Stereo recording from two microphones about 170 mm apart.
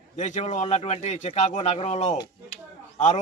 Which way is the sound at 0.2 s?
45° left (ahead or behind).